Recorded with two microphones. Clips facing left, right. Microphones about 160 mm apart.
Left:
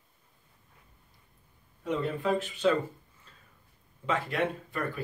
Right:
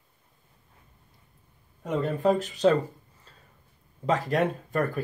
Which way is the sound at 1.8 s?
50° right (ahead or behind).